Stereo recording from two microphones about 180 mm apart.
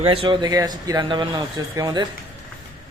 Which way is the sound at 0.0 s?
30° right (ahead or behind).